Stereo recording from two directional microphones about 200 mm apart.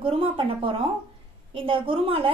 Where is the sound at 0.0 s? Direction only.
25° right (ahead or behind).